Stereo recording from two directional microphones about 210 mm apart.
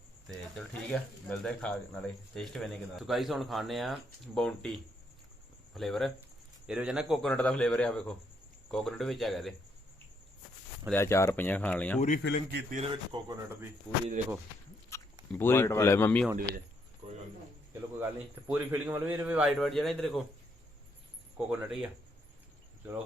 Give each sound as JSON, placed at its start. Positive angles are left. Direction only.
{"t": 0.3, "sound": "speech", "side_deg": 5}
{"t": 10.8, "sound": "speech", "side_deg": 10}
{"t": 11.9, "sound": "speech", "side_deg": 35}
{"t": 12.9, "sound": "a man's voice", "side_deg": -15}
{"t": 13.9, "sound": "speech", "side_deg": 0}
{"t": 14.9, "sound": "a sound", "side_deg": 15}
{"t": 15.3, "sound": "speech", "side_deg": 10}
{"t": 16.2, "sound": "speech", "side_deg": 0}
{"t": 17.0, "sound": "a sound", "side_deg": -30}
{"t": 18.0, "sound": "a man's voice", "side_deg": -10}
{"t": 21.3, "sound": "speech", "side_deg": -5}